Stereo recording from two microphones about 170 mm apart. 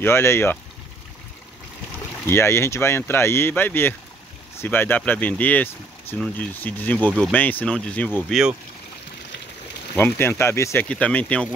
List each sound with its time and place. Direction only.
0.0 s speech: 15° left (ahead or behind)
2.2 s speech: 15° left (ahead or behind)
8.2 s speech: 5° right (ahead or behind)
9.9 s speech: 10° left (ahead or behind)